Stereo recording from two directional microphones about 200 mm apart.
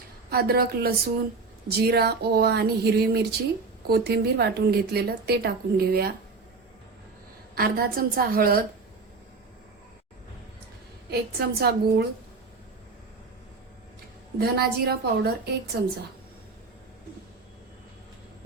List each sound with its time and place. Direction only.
0.3 s speech: 50° right (ahead or behind)
7.5 s speech: 50° right (ahead or behind)
11.1 s speech: 55° right (ahead or behind)
14.3 s speech: 55° right (ahead or behind)